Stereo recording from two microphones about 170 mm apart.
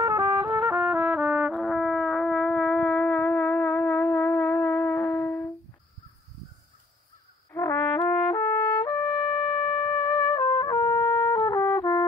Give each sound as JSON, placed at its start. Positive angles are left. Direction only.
{"t": 0.0, "sound": "brass instrument", "side_deg": -15}
{"t": 7.5, "sound": "brass instrument", "side_deg": 15}
{"t": 8.8, "sound": "wind instrument", "side_deg": 25}
{"t": 10.2, "sound": "trumpet", "side_deg": 20}